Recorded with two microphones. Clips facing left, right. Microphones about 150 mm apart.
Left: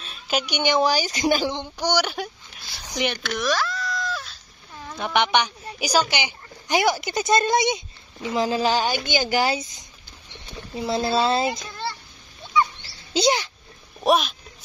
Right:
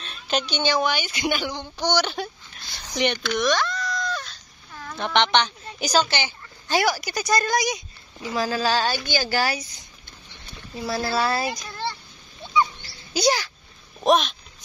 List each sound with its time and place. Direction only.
0.0 s a child's voice: 5° left (ahead or behind)
0.8 s speech: 40° left (ahead or behind)
1.8 s a child's voice: 10° left (ahead or behind)
3.3 s a sound: centre (ahead or behind)
4.7 s speech: 10° left (ahead or behind)
12.8 s a sound: 25° left (ahead or behind)
14.0 s speech: 5° left (ahead or behind)